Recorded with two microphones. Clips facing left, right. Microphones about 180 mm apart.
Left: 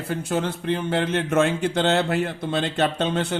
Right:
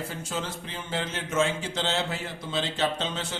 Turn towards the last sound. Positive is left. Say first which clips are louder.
# left 8 dB
turn(degrees=60)  # may be behind; listen again after turning